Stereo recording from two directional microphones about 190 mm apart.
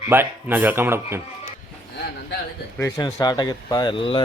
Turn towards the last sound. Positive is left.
turn(degrees=25)  # may be behind; listen again after turning